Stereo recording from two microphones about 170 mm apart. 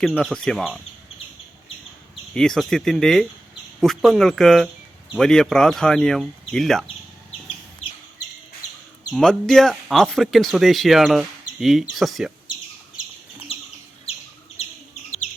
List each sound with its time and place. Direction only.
0.0 s speech: centre (ahead or behind)
2.3 s speech: 5° left (ahead or behind)
9.1 s speech: centre (ahead or behind)
13.5 s bird: 35° left (ahead or behind)